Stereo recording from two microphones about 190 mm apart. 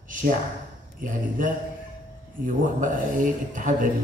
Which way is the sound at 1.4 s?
45° right (ahead or behind).